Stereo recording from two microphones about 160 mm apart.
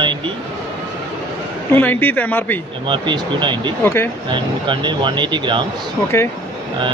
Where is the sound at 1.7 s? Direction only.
10° left (ahead or behind).